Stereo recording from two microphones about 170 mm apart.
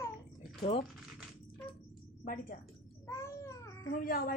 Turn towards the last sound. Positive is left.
turn(degrees=55)  # may be behind; listen again after turning